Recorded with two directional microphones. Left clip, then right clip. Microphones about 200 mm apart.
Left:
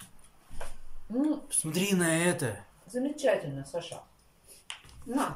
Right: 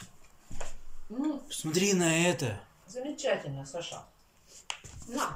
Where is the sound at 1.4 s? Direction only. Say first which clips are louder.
Right 3 dB; centre (ahead or behind).